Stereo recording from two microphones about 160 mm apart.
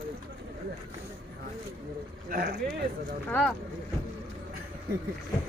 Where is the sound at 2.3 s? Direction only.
65° right (ahead or behind).